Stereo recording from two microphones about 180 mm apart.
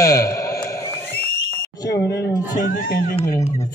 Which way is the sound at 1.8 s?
20° left (ahead or behind).